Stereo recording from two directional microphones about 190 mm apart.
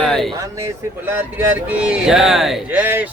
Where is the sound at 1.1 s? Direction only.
10° right (ahead or behind).